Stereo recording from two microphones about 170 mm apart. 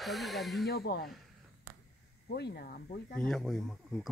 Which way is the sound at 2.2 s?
70° left (ahead or behind).